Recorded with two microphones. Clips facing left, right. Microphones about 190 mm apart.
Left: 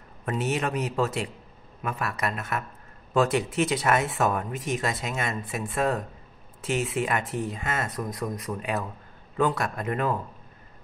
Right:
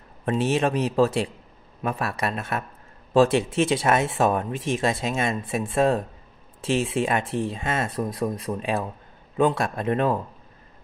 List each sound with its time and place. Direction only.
0.2 s a man's voice: 30° right (ahead or behind)